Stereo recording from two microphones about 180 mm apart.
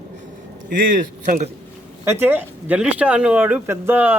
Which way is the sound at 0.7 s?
50° right (ahead or behind).